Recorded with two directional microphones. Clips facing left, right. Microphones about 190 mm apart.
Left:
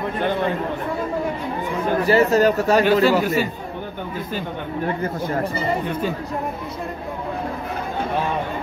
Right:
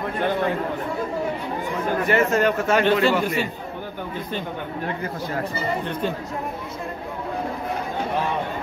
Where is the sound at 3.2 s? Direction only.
5° left (ahead or behind).